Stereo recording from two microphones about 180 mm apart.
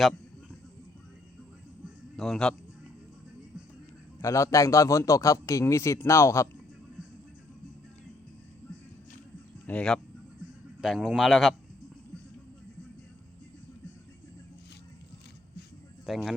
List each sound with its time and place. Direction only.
2.1 s speech: centre (ahead or behind)
4.2 s a man's voice: 15° left (ahead or behind)
9.6 s a man's voice: 5° left (ahead or behind)
16.0 s speech: centre (ahead or behind)